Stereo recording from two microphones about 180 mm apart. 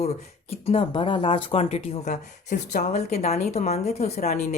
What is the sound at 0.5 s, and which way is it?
A woman's voice, 35° left (ahead or behind).